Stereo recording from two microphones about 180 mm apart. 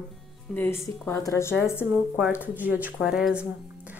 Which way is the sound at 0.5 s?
15° left (ahead or behind).